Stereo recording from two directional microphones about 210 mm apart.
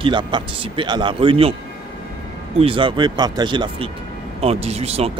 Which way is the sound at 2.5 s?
25° right (ahead or behind).